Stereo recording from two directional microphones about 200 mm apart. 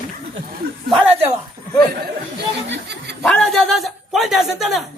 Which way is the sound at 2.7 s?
55° right (ahead or behind).